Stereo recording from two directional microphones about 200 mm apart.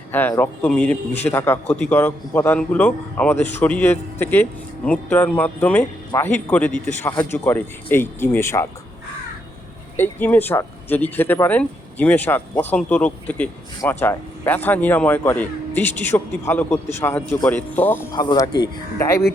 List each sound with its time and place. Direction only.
0.1 s speech: 10° left (ahead or behind)
10.0 s speech: 10° left (ahead or behind)
18.1 s speech: 20° left (ahead or behind)